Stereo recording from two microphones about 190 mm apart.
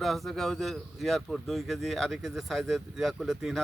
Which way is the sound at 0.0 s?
Centre (ahead or behind).